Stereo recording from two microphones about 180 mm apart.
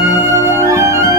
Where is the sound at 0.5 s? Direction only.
15° right (ahead or behind).